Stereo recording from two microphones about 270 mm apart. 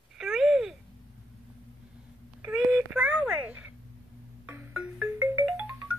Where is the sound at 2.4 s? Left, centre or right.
Centre.